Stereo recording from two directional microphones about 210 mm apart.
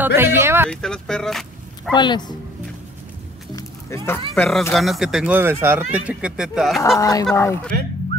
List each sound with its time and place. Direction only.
0.0 s speech: 10° right (ahead or behind)
0.7 s speech: 5° left (ahead or behind)
2.0 s a woman's voice: 20° left (ahead or behind)
3.5 s music: 10° left (ahead or behind)
4.4 s speech: 5° left (ahead or behind)
7.0 s speech: 15° left (ahead or behind)